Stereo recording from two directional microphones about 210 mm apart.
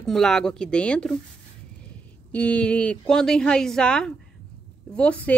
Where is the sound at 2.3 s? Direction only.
5° left (ahead or behind).